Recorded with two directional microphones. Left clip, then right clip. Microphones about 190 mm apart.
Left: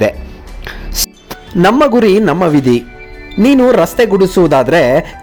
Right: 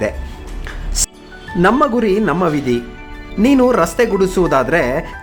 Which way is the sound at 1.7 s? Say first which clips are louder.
Left 6 dB; 30° left (ahead or behind).